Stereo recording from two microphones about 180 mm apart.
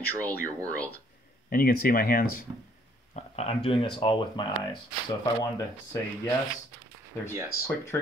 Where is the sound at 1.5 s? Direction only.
55° left (ahead or behind).